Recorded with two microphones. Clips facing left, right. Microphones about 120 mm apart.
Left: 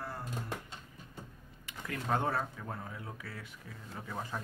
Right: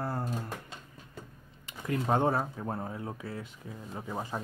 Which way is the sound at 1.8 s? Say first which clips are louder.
Right 6 dB; 25° right (ahead or behind).